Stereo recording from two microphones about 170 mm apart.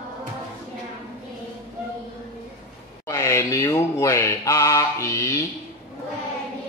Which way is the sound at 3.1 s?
15° left (ahead or behind).